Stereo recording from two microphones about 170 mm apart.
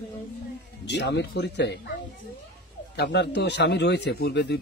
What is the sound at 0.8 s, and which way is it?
Speech, 90° left.